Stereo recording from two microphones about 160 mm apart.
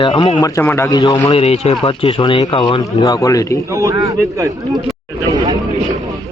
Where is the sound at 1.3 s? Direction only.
40° left (ahead or behind); by 3.5 s 20° left (ahead or behind).